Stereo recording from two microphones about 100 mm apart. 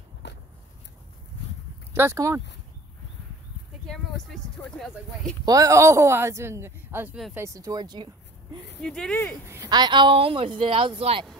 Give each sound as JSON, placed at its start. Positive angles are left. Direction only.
{"t": 2.0, "sound": "speech", "side_deg": -30}
{"t": 3.8, "sound": "a sound", "side_deg": 5}
{"t": 5.4, "sound": "speech", "side_deg": -40}
{"t": 7.3, "sound": "speech", "side_deg": -30}
{"t": 8.8, "sound": "speech", "side_deg": 5}
{"t": 9.7, "sound": "speech", "side_deg": -50}